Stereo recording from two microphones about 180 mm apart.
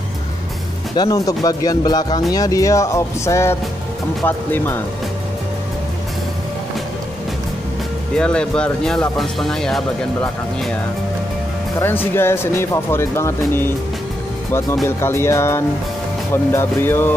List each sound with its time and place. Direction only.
0.9 s speech: 20° left (ahead or behind)
8.2 s speech: 5° left (ahead or behind)
11.8 s speech: 10° left (ahead or behind)
14.9 s speech: 15° left (ahead or behind)